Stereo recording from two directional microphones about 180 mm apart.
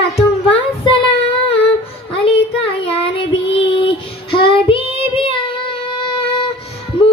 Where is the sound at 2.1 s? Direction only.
35° left (ahead or behind).